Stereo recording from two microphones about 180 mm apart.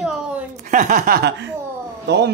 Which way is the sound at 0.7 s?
45° right (ahead or behind).